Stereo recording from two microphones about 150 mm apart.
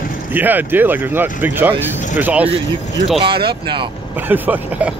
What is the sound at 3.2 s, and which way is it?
Speech, 35° right (ahead or behind).